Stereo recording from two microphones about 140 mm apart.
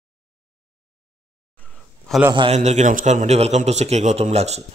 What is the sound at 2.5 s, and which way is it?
A man's voice, 55° right (ahead or behind).